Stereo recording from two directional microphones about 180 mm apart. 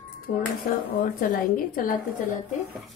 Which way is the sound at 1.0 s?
50° left (ahead or behind).